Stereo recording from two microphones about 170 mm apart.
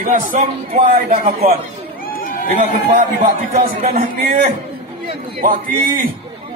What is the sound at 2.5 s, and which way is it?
A man's voice, 50° right (ahead or behind).